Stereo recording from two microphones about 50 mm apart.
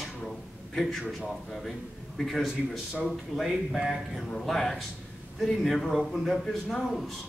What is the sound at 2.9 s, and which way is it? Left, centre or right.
A man's voice, centre.